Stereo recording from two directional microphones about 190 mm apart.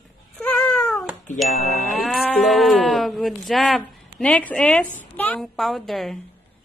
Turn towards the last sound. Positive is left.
turn(degrees=0)  # may be behind; listen again after turning